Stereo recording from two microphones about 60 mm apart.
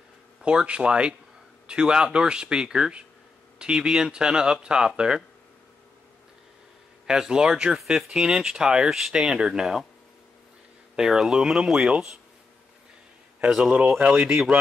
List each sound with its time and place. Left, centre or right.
0.4 s speech: centre
7.1 s speech: centre
11.0 s speech: centre
13.7 s speech: right